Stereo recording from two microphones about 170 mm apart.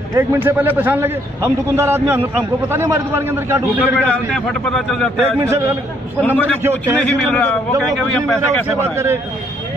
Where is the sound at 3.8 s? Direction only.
10° left (ahead or behind).